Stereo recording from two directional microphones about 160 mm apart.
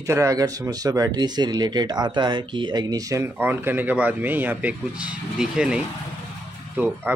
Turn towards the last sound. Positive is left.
turn(degrees=-10)  # may be behind; listen again after turning